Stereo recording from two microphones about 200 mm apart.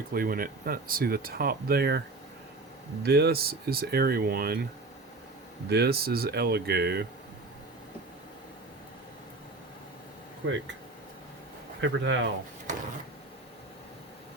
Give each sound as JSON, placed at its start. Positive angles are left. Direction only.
{"t": 0.1, "sound": "speech", "side_deg": -45}
{"t": 3.0, "sound": "speech", "side_deg": -55}
{"t": 5.6, "sound": "speech", "side_deg": -55}
{"t": 11.8, "sound": "speech", "side_deg": -65}